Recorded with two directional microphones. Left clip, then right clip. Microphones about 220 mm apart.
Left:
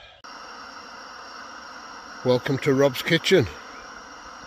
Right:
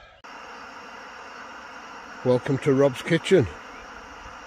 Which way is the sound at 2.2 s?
5° right (ahead or behind).